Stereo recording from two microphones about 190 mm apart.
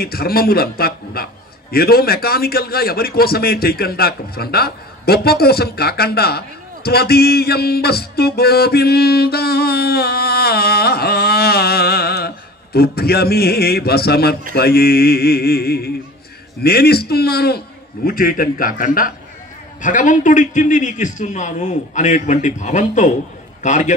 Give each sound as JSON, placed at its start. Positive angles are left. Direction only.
{"t": 0.0, "sound": "a man's voice", "side_deg": 50}